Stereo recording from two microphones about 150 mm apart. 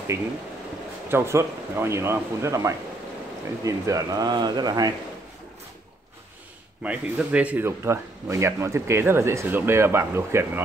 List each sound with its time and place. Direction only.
1.0 s speech: 15° right (ahead or behind)
6.8 s speech: 10° right (ahead or behind)